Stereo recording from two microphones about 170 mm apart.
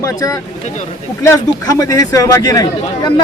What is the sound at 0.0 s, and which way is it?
Speech, 20° left (ahead or behind).